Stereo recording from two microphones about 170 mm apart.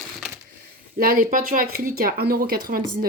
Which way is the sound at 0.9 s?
60° right (ahead or behind).